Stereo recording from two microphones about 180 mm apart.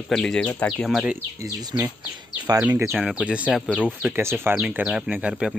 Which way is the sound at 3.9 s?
10° right (ahead or behind).